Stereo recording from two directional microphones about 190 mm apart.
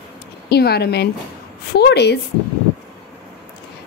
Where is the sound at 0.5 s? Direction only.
55° left (ahead or behind).